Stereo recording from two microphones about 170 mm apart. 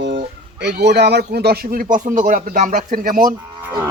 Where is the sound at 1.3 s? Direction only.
70° right (ahead or behind).